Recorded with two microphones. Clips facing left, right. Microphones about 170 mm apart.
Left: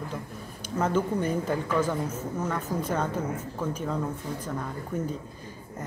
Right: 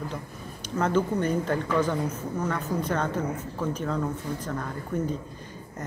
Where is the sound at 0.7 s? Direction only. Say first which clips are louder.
Right 1 dB; 10° left (ahead or behind).